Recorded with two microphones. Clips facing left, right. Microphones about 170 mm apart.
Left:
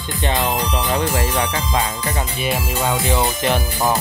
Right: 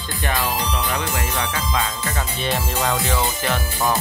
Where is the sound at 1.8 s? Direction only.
20° left (ahead or behind).